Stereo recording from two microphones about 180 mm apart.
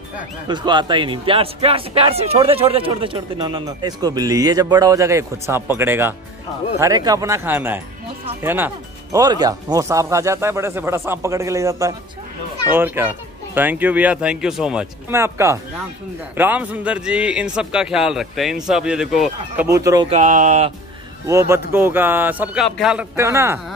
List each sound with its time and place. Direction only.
0.5 s a man's voice: 25° right (ahead or behind)
20.1 s speech: 40° right (ahead or behind)
21.3 s speech: 15° right (ahead or behind)
23.1 s speech: 15° right (ahead or behind)